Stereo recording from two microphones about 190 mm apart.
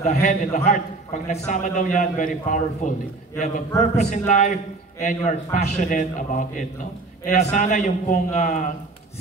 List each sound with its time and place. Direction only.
0.0 s a man's voice: 40° left (ahead or behind)